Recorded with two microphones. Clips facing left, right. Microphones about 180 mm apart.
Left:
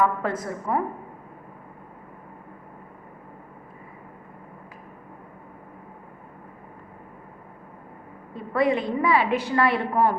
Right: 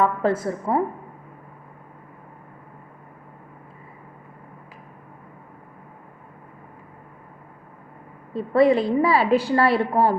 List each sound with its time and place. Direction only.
0.0 s a woman's voice: 30° right (ahead or behind)
8.3 s a woman's voice: 30° right (ahead or behind)